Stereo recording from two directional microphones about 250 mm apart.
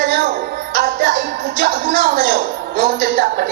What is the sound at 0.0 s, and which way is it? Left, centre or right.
Music, right.